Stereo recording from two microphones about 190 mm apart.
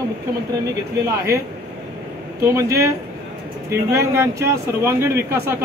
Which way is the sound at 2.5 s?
15° right (ahead or behind).